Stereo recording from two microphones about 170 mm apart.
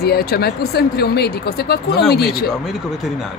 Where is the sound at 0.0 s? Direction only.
65° left (ahead or behind).